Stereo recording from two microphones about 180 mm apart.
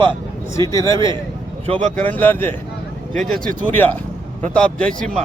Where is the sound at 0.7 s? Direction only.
20° left (ahead or behind).